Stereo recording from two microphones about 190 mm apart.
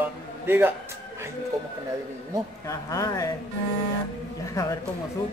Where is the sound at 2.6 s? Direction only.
20° left (ahead or behind).